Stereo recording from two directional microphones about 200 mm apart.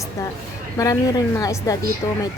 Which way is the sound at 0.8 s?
15° left (ahead or behind).